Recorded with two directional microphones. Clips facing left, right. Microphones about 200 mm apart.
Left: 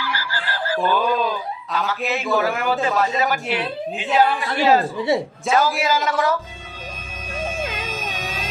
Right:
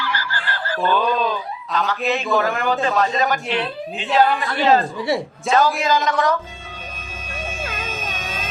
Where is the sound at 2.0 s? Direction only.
10° left (ahead or behind).